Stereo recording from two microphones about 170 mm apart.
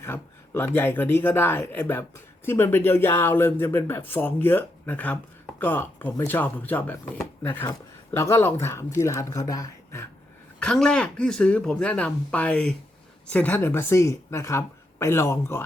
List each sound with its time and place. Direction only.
0.0 s speech: 15° left (ahead or behind)
10.6 s speech: 5° left (ahead or behind)